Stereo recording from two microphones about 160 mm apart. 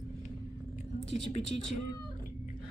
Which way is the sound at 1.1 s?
40° left (ahead or behind).